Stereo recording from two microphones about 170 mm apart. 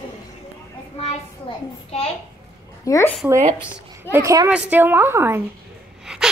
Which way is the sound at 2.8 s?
15° left (ahead or behind).